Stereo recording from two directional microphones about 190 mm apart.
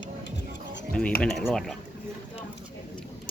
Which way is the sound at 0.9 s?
5° left (ahead or behind).